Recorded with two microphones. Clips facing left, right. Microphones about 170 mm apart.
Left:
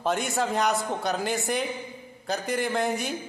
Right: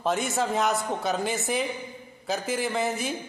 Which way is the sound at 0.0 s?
Centre (ahead or behind).